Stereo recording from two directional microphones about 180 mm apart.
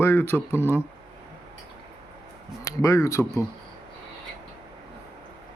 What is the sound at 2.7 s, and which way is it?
Speech, 15° left (ahead or behind).